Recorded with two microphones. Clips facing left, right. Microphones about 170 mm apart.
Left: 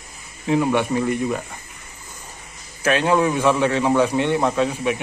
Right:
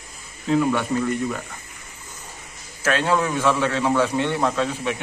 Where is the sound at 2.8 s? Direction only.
15° left (ahead or behind).